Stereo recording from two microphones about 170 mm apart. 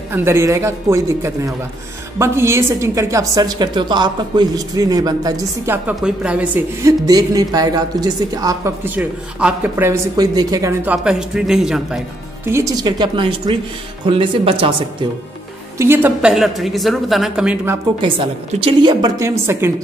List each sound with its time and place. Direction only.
0.1 s a woman's voice: 15° right (ahead or behind)
5.9 s speech: 5° right (ahead or behind)
6.8 s a woman's voice: 20° right (ahead or behind)
11.1 s a woman's voice: 5° right (ahead or behind)
12.4 s a woman's voice: 20° right (ahead or behind)
15.8 s a woman's voice: 10° right (ahead or behind)
18.0 s a woman's voice: 30° right (ahead or behind); by 19.7 s 15° right (ahead or behind)